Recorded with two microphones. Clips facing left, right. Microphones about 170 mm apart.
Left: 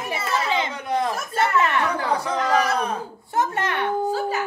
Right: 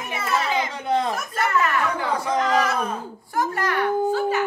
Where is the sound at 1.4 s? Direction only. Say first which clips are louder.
Left 2 dB; 25° left (ahead or behind).